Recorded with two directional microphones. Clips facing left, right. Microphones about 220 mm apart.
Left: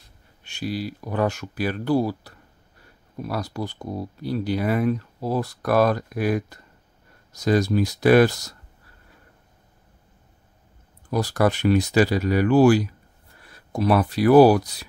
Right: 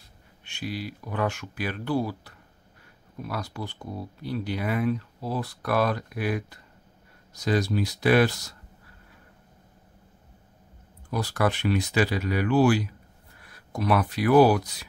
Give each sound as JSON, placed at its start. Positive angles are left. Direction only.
{"t": 0.4, "sound": "speech", "side_deg": 40}
{"t": 11.1, "sound": "speech", "side_deg": 40}
{"t": 13.5, "sound": "speech", "side_deg": 30}